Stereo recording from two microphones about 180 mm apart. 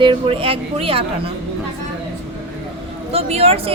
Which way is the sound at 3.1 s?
35° right (ahead or behind).